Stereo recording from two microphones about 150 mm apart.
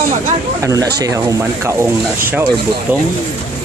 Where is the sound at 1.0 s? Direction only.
20° right (ahead or behind).